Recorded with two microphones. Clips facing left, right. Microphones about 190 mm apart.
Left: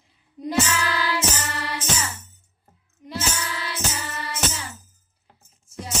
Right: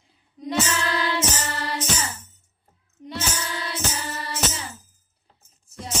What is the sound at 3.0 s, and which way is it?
Music, 35° right (ahead or behind).